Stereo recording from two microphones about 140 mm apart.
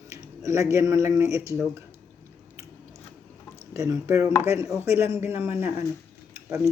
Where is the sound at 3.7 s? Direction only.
20° right (ahead or behind).